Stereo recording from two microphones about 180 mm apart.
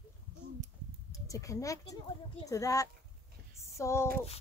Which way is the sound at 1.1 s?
20° left (ahead or behind).